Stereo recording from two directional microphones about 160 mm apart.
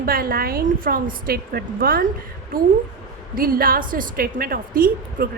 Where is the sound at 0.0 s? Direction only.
65° right (ahead or behind).